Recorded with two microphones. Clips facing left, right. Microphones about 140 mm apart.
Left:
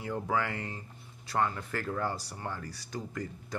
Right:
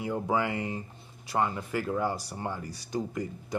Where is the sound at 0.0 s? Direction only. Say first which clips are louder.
Right 3 dB; 15° right (ahead or behind).